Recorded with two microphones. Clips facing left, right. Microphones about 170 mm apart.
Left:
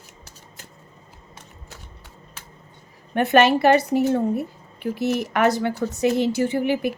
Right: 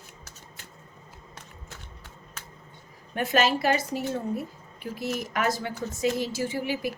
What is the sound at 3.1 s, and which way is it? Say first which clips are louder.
A woman's voice: left 8 dB; 65° left (ahead or behind).